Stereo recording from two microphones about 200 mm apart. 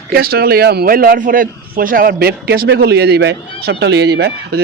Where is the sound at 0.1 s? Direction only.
50° right (ahead or behind).